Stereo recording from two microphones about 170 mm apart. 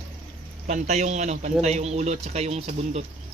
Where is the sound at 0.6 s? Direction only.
45° right (ahead or behind).